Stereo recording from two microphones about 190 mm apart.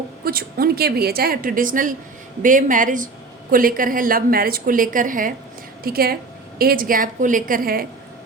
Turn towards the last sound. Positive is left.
turn(degrees=-50)  # may be behind; listen again after turning